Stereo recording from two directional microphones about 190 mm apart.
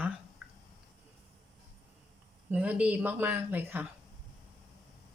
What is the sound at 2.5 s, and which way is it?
Speech, 5° right (ahead or behind).